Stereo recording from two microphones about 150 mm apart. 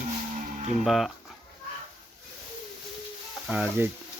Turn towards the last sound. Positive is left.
turn(degrees=-5)  # may be behind; listen again after turning